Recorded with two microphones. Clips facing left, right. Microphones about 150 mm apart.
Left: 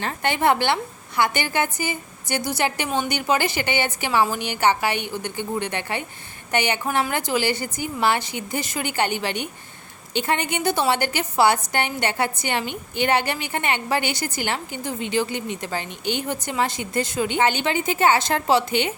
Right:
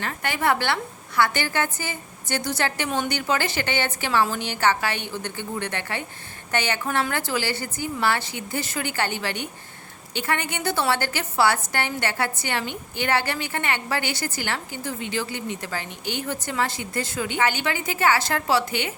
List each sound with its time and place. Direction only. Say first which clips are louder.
0.0 s a woman's voice: left 4 dB; 25° left (ahead or behind)